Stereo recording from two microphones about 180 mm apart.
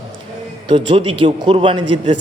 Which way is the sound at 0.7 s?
30° right (ahead or behind).